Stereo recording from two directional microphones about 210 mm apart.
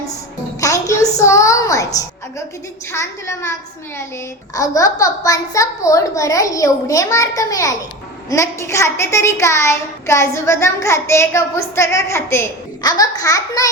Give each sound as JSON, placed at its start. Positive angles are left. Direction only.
{"t": 0.6, "sound": "a sound", "side_deg": 15}
{"t": 2.9, "sound": "a child's voice", "side_deg": 10}
{"t": 4.5, "sound": "a child's voice", "side_deg": 15}